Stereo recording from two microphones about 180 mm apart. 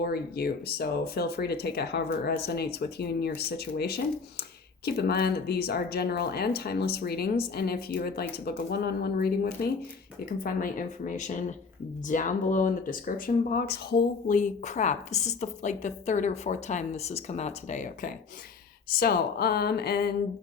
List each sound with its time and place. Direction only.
0.0 s speech: 60° left (ahead or behind); by 18.1 s 40° left (ahead or behind)
18.9 s speech: 55° left (ahead or behind)